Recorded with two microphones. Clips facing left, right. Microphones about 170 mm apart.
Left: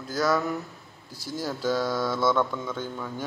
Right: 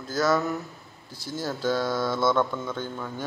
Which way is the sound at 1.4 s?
10° left (ahead or behind).